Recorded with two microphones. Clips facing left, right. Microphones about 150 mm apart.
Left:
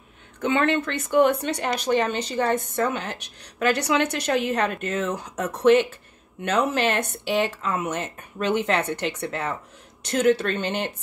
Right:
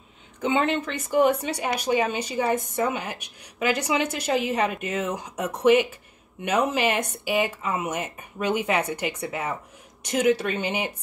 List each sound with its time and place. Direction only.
0.4 s a woman's voice: 15° right (ahead or behind)